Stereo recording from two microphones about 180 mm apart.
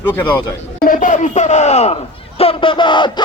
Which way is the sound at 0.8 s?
45° left (ahead or behind).